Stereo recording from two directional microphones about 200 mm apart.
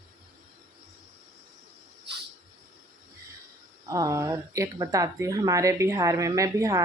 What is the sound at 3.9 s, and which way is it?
Speech, 15° right (ahead or behind).